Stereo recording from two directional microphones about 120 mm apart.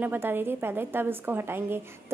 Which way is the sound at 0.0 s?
15° right (ahead or behind).